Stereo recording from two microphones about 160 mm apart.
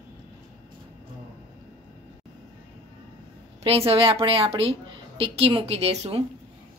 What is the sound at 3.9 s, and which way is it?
A woman's voice, 35° right (ahead or behind).